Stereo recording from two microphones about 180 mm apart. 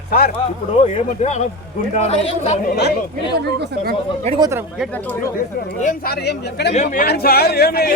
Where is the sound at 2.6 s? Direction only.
65° left (ahead or behind).